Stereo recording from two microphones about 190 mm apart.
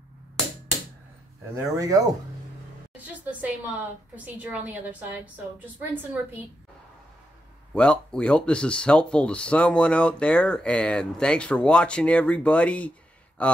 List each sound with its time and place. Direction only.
1.6 s a woman's voice: 20° right (ahead or behind)
2.9 s a woman's voice: 10° right (ahead or behind)
7.7 s speech: 5° left (ahead or behind)